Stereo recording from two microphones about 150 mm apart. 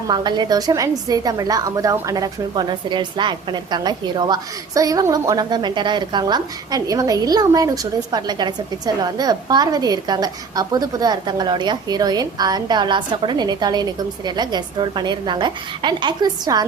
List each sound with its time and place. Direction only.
0.1 s a woman's voice: 30° right (ahead or behind)